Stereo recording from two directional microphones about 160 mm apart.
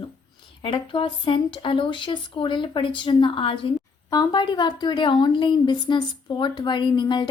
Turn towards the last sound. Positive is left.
turn(degrees=25)  # may be behind; listen again after turning